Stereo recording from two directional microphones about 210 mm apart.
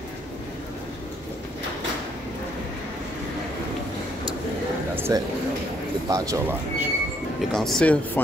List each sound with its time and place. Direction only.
4.9 s a sound: 10° right (ahead or behind)
6.0 s speech: 15° right (ahead or behind)
7.5 s speech: centre (ahead or behind)